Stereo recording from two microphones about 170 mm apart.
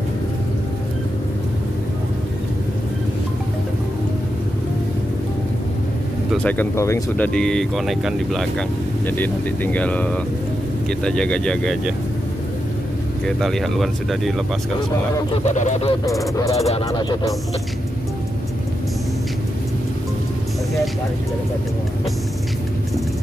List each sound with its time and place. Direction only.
6.3 s speech: 10° left (ahead or behind)
13.4 s speech: centre (ahead or behind)
15.3 s speech: 45° left (ahead or behind)
16.1 s speech: 20° left (ahead or behind)
16.5 s speech: 40° left (ahead or behind)
16.9 s speech: 25° left (ahead or behind)